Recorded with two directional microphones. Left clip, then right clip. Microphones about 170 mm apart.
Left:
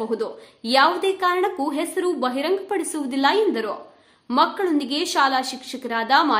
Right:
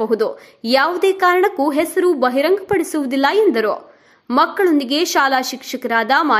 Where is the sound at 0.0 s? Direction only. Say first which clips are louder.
Right 8 dB; 35° right (ahead or behind).